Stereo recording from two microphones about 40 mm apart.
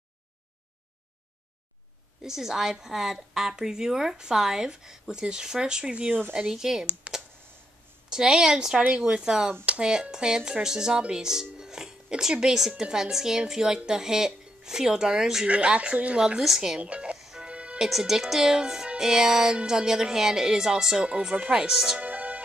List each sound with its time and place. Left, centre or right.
2.2 s a woman's voice: centre
8.1 s a woman's voice: centre
8.7 s speech: right
9.2 s a woman's voice: centre
15.4 s speech: right
16.2 s a woman's voice: centre
16.7 s speech: right
17.4 s music: right
17.7 s a woman's voice: centre; by 21.6 s right
21.6 s a woman's voice: centre
22.0 s music: right